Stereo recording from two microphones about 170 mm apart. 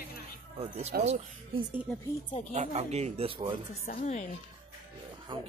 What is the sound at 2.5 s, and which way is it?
Speech, 40° right (ahead or behind).